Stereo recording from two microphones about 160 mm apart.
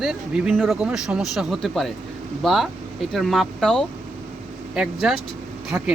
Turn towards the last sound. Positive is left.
turn(degrees=-5)  # may be behind; listen again after turning